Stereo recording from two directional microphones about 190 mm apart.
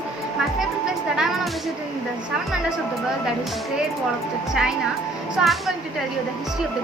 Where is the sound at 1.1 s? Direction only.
Centre (ahead or behind).